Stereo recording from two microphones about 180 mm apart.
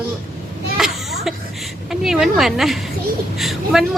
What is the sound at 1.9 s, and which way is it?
Speech, centre (ahead or behind).